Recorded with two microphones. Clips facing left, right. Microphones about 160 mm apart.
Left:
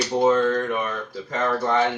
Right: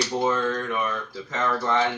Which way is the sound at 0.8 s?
35° left (ahead or behind).